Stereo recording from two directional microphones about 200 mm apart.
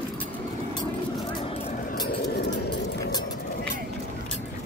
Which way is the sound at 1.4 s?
30° left (ahead or behind).